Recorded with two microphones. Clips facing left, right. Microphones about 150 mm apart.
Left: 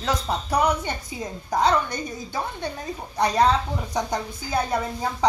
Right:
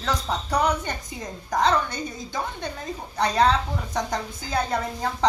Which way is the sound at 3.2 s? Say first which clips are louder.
Left 1 dB; 10° left (ahead or behind).